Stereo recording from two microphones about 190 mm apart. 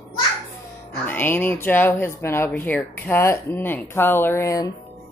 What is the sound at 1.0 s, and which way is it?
Speech, 10° left (ahead or behind).